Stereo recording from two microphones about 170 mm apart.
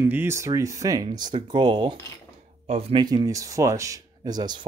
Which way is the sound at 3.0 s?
20° right (ahead or behind).